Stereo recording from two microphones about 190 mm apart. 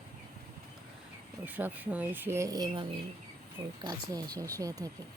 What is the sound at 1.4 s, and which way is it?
Speech, 10° right (ahead or behind).